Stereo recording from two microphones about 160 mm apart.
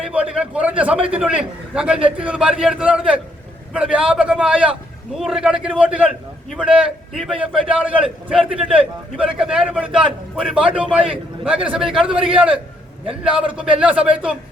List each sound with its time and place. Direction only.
0.1 s a man's voice: 5° right (ahead or behind)
12.1 s a man's voice: 35° right (ahead or behind)
13.6 s a man's voice: 5° right (ahead or behind)